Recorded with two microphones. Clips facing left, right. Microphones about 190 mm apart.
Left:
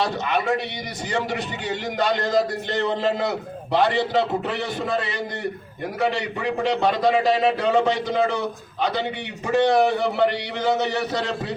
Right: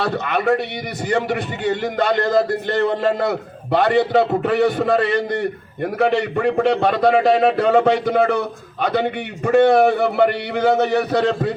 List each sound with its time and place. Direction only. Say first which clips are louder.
0.0 s a man's voice: right 3 dB; 55° right (ahead or behind)